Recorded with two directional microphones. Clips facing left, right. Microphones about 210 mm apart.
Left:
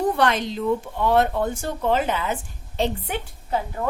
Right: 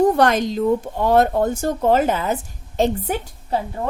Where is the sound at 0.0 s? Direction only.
45° right (ahead or behind).